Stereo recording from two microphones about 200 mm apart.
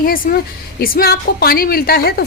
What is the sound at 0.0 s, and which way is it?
A woman's voice, 45° left (ahead or behind).